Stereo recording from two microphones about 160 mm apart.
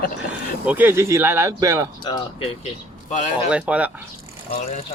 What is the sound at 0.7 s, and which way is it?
Speech, 10° right (ahead or behind).